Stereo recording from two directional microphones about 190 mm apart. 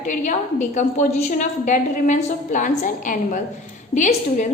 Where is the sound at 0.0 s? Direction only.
40° left (ahead or behind).